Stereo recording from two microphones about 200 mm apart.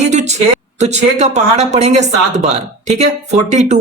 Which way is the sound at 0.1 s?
35° right (ahead or behind).